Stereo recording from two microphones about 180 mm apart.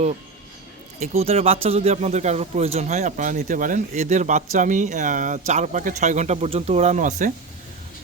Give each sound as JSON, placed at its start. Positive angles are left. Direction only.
{"t": 0.9, "sound": "speech", "side_deg": -40}